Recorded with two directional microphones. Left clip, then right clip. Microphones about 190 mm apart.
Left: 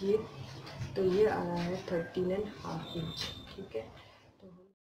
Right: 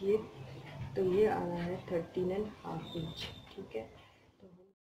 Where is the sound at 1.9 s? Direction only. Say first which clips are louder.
Left 1 dB; 10° right (ahead or behind).